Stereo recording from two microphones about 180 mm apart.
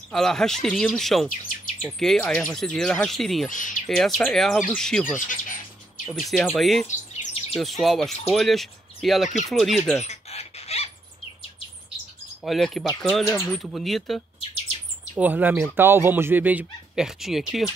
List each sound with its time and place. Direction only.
0.1 s speech: 5° left (ahead or behind)
3.4 s speech: 45° left (ahead or behind)
3.9 s speech: 5° left (ahead or behind)
5.0 s speech: 45° left (ahead or behind)
6.0 s speech: centre (ahead or behind)
10.0 s a sound: 35° left (ahead or behind)
12.4 s speech: centre (ahead or behind)
13.2 s speech: 15° left (ahead or behind)
13.5 s speech: centre (ahead or behind)